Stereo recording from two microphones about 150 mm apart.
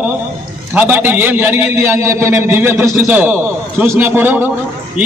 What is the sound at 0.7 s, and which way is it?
A man's voice, 10° right (ahead or behind).